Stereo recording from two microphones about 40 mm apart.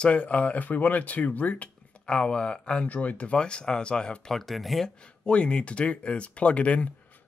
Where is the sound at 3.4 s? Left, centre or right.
Left.